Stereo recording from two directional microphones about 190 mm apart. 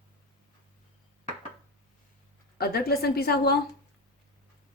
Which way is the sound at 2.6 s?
55° left (ahead or behind).